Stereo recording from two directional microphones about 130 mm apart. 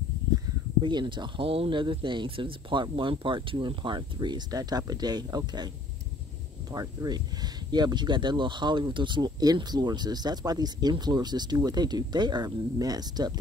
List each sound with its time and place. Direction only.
0.8 s speech: 35° right (ahead or behind)
6.7 s speech: 30° right (ahead or behind)